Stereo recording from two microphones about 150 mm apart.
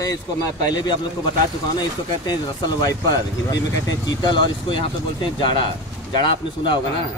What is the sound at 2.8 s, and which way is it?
Speech, 25° left (ahead or behind).